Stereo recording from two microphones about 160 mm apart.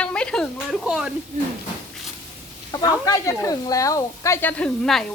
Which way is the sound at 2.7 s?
25° left (ahead or behind).